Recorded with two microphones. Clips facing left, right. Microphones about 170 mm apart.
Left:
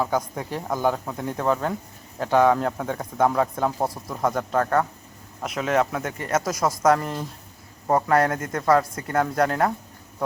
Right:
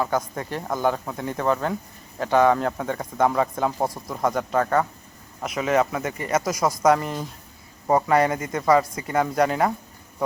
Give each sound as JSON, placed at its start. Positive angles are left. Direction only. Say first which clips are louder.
{"t": 0.0, "sound": "speech", "louder": "even", "side_deg": 5}